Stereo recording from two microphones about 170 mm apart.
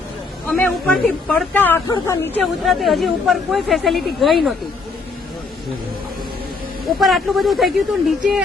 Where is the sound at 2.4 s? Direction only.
Centre (ahead or behind).